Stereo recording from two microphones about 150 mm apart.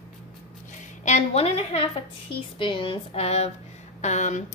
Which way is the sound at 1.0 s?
45° left (ahead or behind).